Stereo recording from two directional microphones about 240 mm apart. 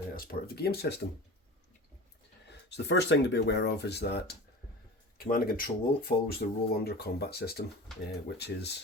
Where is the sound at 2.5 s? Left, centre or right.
Left.